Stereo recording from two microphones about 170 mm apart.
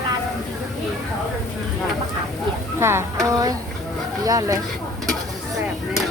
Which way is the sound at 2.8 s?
15° right (ahead or behind).